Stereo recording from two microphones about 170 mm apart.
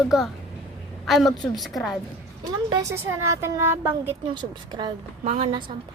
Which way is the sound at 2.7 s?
20° right (ahead or behind).